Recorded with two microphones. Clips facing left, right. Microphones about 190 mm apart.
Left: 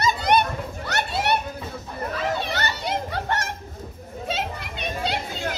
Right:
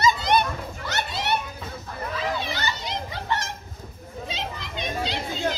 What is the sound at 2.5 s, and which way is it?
Children playing, 65° left (ahead or behind).